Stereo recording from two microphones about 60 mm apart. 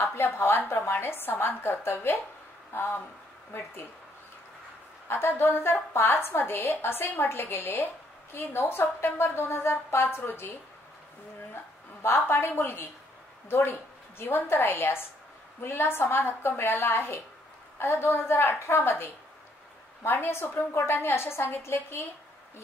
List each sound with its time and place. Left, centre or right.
0.0 s a woman's voice: left
5.0 s a woman's voice: left
11.5 s a woman's voice: left